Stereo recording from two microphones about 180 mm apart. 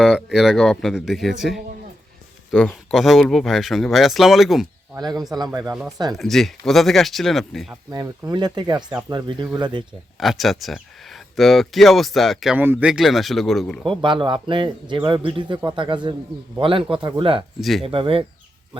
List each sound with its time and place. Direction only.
0.0 s speech: centre (ahead or behind)
4.9 s a man's voice: 20° right (ahead or behind)
6.1 s speech: centre (ahead or behind)
7.9 s a man's voice: 20° right (ahead or behind)
10.2 s speech: centre (ahead or behind)
14.0 s a man's voice: 25° right (ahead or behind)
17.6 s speech: centre (ahead or behind)
17.8 s a man's voice: 30° right (ahead or behind)